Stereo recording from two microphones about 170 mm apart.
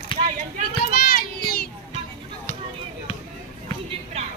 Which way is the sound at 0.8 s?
60° left (ahead or behind).